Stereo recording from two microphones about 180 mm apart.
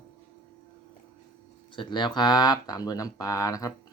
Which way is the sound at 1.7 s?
25° left (ahead or behind).